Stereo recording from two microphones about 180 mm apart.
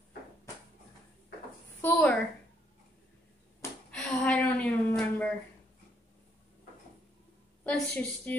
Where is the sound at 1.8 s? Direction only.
10° left (ahead or behind).